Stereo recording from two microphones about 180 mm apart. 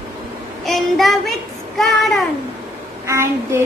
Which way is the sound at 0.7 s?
Centre (ahead or behind).